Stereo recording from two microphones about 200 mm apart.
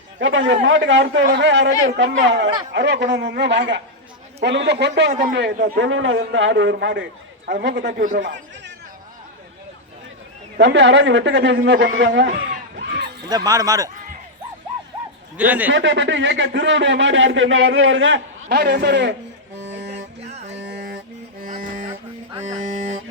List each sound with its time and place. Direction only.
0.2 s speech: 70° right (ahead or behind)
5.5 s a man's voice: 45° right (ahead or behind)
5.8 s speech: 70° right (ahead or behind)
10.6 s speech: 60° right (ahead or behind)
12.7 s a sound: 55° right (ahead or behind)
13.2 s speech: 20° right (ahead or behind)
15.4 s speech: 10° right (ahead or behind)
15.7 s speech: 65° right (ahead or behind)
18.4 s speech: 50° right (ahead or behind)
19.6 s music: 60° right (ahead or behind); by 21.8 s 45° right (ahead or behind)
22.6 s honk: 40° right (ahead or behind)